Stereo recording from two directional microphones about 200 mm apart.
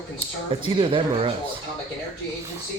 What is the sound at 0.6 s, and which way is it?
Speech, 25° right (ahead or behind).